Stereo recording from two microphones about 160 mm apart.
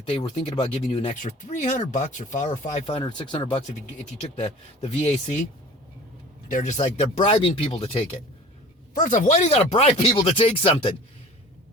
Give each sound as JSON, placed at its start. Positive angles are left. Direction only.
{"t": 0.1, "sound": "speech", "side_deg": 35}
{"t": 1.2, "sound": "speech", "side_deg": 50}
{"t": 6.5, "sound": "speech", "side_deg": 45}
{"t": 9.0, "sound": "speech", "side_deg": 50}